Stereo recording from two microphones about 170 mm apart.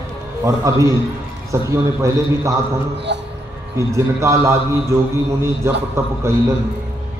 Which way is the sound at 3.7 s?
15° right (ahead or behind).